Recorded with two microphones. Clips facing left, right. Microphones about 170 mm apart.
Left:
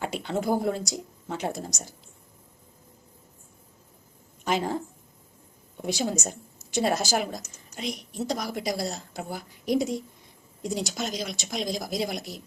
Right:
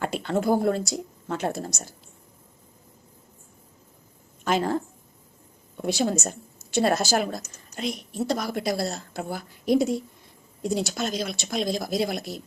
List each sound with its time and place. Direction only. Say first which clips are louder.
0.1 s speech: right 4 dB; 15° left (ahead or behind)
4.4 s speech: right 3 dB; 15° left (ahead or behind)
5.9 s speech: right 3 dB; 15° left (ahead or behind)